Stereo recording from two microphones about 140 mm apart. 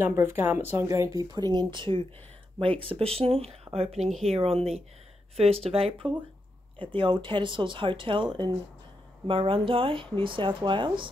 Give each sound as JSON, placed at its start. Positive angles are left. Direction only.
{"t": 0.0, "sound": "speech", "side_deg": -15}
{"t": 1.3, "sound": "speech", "side_deg": -30}